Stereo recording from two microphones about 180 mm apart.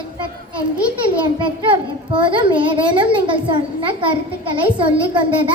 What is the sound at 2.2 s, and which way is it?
A child's voice, 25° right (ahead or behind).